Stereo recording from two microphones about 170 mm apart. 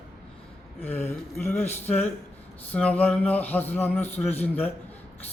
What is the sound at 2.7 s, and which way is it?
A man's voice, 10° left (ahead or behind).